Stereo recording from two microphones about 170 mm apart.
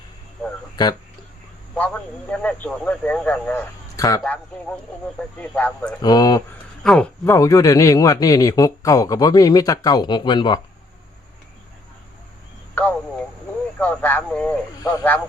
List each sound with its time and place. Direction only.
0.8 s a man's voice: 25° left (ahead or behind)
1.7 s speech: 5° left (ahead or behind)
3.9 s a sound: 20° left (ahead or behind)
5.4 s speech: 10° left (ahead or behind)
6.0 s a man's voice: 25° left (ahead or behind)
6.8 s speech: 5° left (ahead or behind)
7.3 s a man's voice: 20° left (ahead or behind)
13.7 s a sound: 10° left (ahead or behind)
14.8 s speech: 20° left (ahead or behind)